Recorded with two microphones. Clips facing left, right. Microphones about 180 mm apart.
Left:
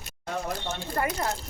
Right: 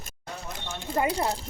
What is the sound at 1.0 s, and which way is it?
Speech, 30° right (ahead or behind).